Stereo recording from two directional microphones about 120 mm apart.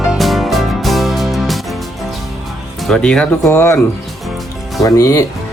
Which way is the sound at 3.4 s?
20° left (ahead or behind).